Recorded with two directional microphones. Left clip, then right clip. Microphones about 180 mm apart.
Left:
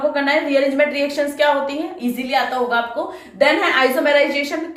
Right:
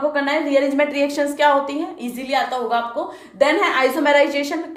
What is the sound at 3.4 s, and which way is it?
A woman's voice, 45° right (ahead or behind).